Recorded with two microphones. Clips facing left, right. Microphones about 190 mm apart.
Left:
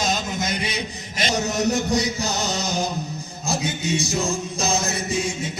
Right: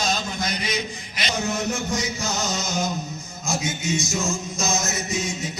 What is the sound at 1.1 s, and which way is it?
Music, 45° left (ahead or behind).